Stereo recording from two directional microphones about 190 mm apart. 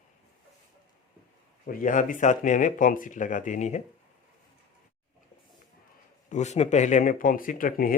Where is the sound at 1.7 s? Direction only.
45° left (ahead or behind).